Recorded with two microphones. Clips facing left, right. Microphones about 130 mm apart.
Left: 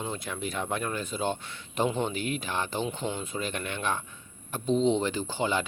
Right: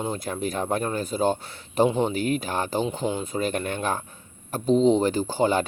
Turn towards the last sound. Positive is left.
turn(degrees=-40)  # may be behind; listen again after turning